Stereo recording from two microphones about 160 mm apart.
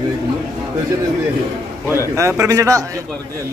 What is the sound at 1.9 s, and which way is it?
Speech, 15° right (ahead or behind).